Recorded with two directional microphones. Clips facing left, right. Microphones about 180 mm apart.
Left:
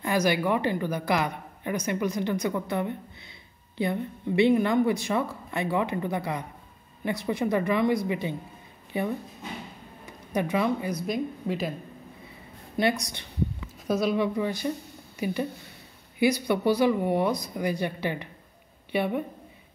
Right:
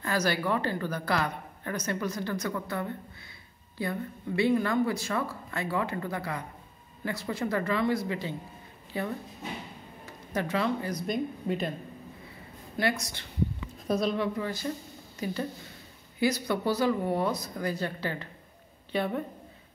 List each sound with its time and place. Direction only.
0.0 s a woman's voice: 15° left (ahead or behind)
10.0 s a woman's voice: 15° left (ahead or behind)
11.1 s speech: centre (ahead or behind)
12.7 s a woman's voice: 20° left (ahead or behind)
13.8 s speech: centre (ahead or behind)
14.1 s a woman's voice: 15° left (ahead or behind)